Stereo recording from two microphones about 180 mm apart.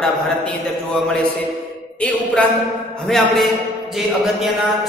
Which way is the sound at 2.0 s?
10° left (ahead or behind).